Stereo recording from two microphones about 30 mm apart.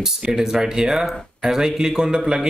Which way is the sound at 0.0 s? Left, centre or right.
Centre.